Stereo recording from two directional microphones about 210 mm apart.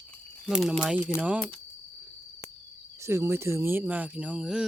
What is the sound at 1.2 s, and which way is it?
Speech, 5° right (ahead or behind).